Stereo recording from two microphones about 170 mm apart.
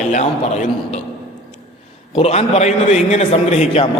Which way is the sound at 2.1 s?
40° left (ahead or behind).